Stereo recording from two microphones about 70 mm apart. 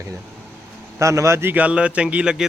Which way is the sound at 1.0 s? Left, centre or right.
Right.